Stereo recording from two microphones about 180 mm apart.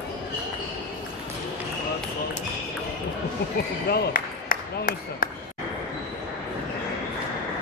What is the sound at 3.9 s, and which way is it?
Speech, 55° left (ahead or behind).